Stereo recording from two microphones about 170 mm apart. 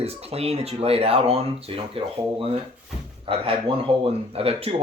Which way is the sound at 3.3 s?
30° right (ahead or behind).